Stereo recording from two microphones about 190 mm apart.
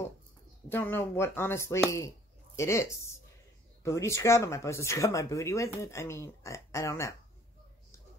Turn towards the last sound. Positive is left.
turn(degrees=15)  # may be behind; listen again after turning